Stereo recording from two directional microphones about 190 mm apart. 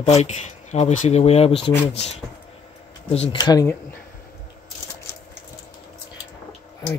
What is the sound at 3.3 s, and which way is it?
Speech, 20° left (ahead or behind).